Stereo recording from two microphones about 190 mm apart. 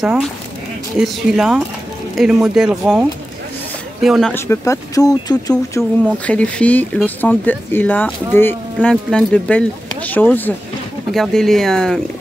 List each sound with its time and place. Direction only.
0.0 s speech: centre (ahead or behind)
4.3 s speech: 15° left (ahead or behind)
6.2 s speech: 5° left (ahead or behind)